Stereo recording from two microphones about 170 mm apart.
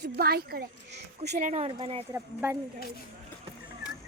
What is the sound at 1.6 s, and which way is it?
Speech, 35° right (ahead or behind).